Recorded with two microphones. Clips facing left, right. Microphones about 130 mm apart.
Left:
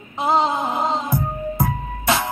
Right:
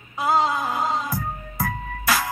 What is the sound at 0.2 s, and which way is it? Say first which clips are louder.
Music: left 2 dB; 25° left (ahead or behind).